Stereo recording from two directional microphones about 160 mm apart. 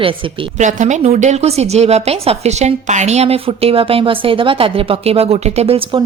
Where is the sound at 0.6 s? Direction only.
50° right (ahead or behind).